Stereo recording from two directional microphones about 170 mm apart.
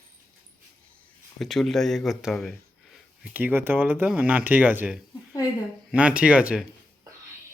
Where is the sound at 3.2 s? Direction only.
10° right (ahead or behind).